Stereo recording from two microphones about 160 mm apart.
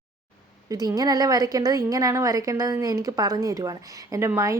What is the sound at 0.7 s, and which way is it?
A woman's voice, 25° right (ahead or behind).